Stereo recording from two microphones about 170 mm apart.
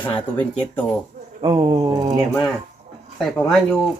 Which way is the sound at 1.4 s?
25° right (ahead or behind).